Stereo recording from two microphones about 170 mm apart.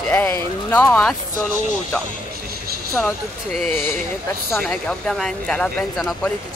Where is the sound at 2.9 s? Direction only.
Centre (ahead or behind).